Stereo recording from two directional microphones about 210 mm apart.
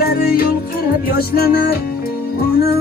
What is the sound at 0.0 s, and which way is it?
Music, 45° left (ahead or behind).